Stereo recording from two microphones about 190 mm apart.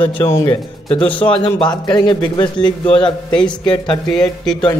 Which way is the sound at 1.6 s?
25° left (ahead or behind).